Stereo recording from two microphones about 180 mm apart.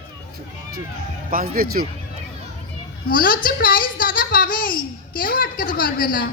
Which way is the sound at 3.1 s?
50° left (ahead or behind).